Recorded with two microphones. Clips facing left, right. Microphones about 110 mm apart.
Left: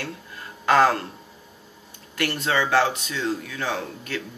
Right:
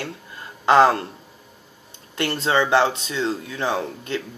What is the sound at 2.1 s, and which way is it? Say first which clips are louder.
Speech: right 3 dB; 25° right (ahead or behind).